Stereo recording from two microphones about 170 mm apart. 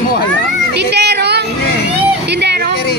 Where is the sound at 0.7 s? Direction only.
80° right.